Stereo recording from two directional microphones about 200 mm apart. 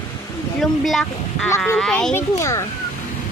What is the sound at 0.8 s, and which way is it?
Speech, centre (ahead or behind).